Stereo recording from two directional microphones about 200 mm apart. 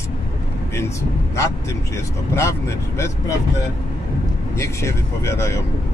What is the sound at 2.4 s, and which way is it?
Speech, 15° left (ahead or behind).